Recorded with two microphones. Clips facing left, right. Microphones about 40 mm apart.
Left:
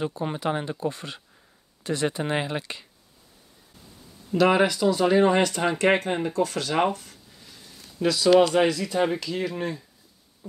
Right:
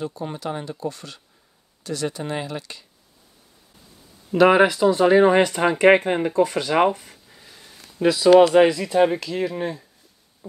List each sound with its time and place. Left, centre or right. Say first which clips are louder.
0.0 s speech: left 2 dB; left
4.3 s speech: right 5 dB; centre